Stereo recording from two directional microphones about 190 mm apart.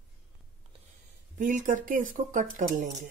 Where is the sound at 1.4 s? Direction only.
40° right (ahead or behind).